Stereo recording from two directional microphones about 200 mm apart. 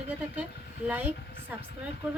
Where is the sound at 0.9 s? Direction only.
10° right (ahead or behind).